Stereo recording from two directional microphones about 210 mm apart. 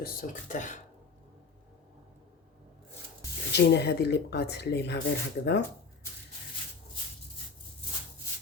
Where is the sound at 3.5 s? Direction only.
50° left (ahead or behind).